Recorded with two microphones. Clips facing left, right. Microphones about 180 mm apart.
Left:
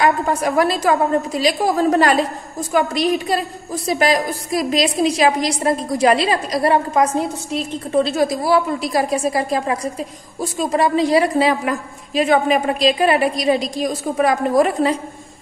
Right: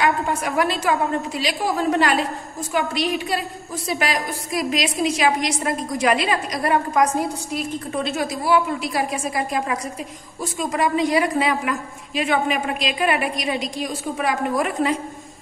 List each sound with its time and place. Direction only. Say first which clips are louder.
0.0 s a woman's voice: left 4 dB; 35° left (ahead or behind)